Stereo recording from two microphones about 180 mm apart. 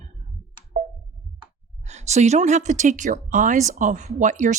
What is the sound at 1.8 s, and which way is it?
A woman's voice, 40° right (ahead or behind).